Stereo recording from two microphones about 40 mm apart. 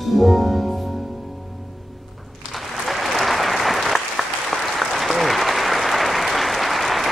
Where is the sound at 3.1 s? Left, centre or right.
Centre.